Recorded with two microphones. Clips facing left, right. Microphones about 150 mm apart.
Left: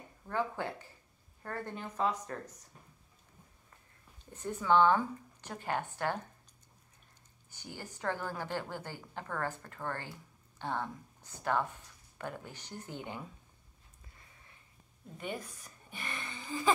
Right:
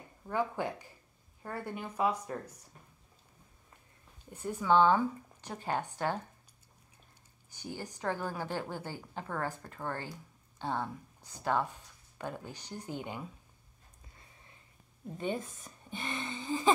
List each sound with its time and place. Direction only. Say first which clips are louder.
0.3 s a woman's voice: right 2 dB; 15° right (ahead or behind)
4.3 s a woman's voice: right 1 dB; 10° right (ahead or behind)
7.7 s a woman's voice: right 1 dB; 15° right (ahead or behind)
15.1 s speech: right 5 dB; 25° right (ahead or behind)